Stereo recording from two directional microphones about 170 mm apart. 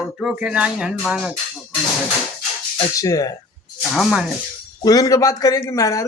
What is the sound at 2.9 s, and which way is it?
Music, 20° left (ahead or behind).